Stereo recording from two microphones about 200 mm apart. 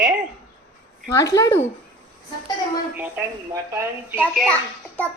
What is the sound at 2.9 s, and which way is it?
A woman's voice, 5° right (ahead or behind).